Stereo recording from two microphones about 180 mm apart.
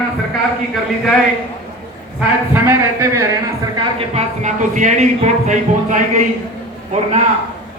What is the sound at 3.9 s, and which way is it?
Speech, 40° right (ahead or behind).